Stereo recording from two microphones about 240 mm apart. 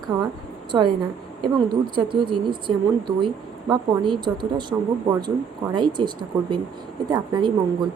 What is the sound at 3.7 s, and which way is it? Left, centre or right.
A woman's voice, centre.